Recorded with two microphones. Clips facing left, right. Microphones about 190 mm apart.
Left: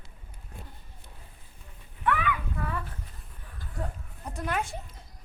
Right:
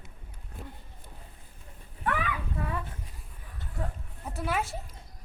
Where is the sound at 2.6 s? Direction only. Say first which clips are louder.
Even; 25° right (ahead or behind).